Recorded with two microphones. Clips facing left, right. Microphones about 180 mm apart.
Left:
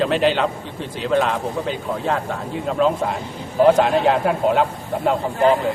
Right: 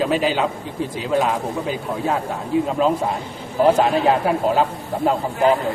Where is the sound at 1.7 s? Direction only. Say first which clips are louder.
Right 1 dB; centre (ahead or behind).